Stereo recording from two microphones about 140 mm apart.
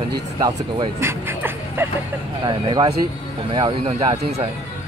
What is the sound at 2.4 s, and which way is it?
Speech, 30° right (ahead or behind).